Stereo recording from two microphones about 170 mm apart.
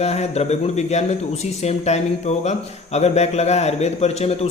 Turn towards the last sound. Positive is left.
turn(degrees=40)  # may be behind; listen again after turning